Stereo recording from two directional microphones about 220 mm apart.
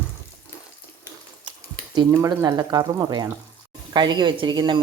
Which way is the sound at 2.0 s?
15° right (ahead or behind).